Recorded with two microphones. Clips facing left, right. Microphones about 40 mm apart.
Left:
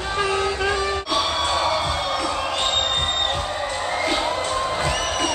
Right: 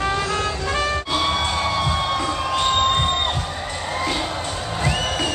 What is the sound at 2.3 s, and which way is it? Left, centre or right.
Crowd, centre.